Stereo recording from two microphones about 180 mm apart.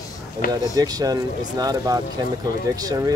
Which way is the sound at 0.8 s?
20° right (ahead or behind).